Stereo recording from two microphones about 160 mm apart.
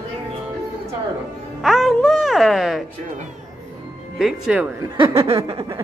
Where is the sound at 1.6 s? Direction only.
Centre (ahead or behind).